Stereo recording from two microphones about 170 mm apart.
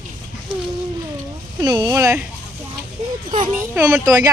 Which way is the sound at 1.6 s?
25° right (ahead or behind).